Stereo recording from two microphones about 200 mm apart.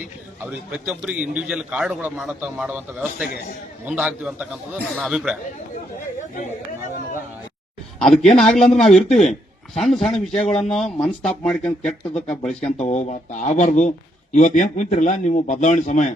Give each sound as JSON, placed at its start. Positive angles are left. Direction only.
{"t": 0.4, "sound": "a man's voice", "side_deg": -5}
{"t": 7.9, "sound": "a man's voice", "side_deg": 5}
{"t": 12.6, "sound": "a man's voice", "side_deg": 35}